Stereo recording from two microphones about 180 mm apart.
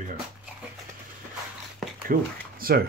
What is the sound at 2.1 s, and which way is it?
Speech, 50° right (ahead or behind).